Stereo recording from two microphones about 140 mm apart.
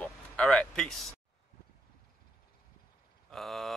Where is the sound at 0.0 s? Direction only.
5° left (ahead or behind).